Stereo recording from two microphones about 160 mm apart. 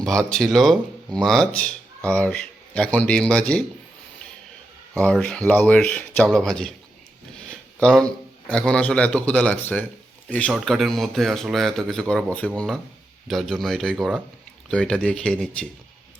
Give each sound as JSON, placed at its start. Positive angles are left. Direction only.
{"t": 0.0, "sound": "speech", "side_deg": 5}
{"t": 4.9, "sound": "speech", "side_deg": 5}
{"t": 7.5, "sound": "a sound", "side_deg": 5}
{"t": 8.4, "sound": "speech", "side_deg": 5}